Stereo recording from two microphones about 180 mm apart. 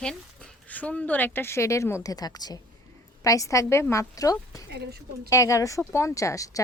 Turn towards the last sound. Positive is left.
turn(degrees=15)  # may be behind; listen again after turning